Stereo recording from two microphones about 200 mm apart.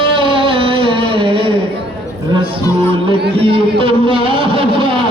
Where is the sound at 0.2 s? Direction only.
25° right (ahead or behind).